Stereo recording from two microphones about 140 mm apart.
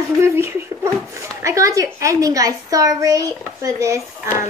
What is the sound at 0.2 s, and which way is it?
A woman's voice, 20° right (ahead or behind).